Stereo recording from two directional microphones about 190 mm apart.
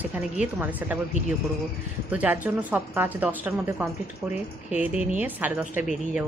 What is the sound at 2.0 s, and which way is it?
A woman's voice, 10° right (ahead or behind).